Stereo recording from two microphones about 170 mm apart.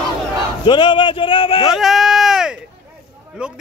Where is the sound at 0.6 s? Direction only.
25° left (ahead or behind).